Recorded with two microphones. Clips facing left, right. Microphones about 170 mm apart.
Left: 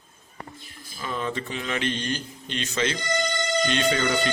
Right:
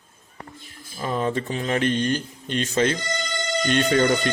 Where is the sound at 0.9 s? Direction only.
40° right (ahead or behind).